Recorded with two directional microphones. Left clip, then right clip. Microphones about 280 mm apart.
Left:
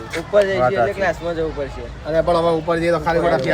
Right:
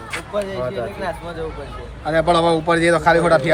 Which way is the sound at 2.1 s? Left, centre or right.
Right.